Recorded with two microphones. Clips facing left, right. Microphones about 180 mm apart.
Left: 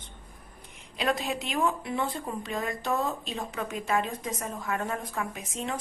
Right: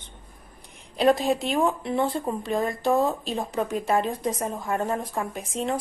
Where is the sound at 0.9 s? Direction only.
40° right (ahead or behind).